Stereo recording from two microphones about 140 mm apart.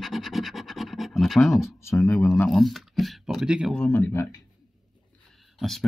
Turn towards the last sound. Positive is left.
turn(degrees=0)  # may be behind; listen again after turning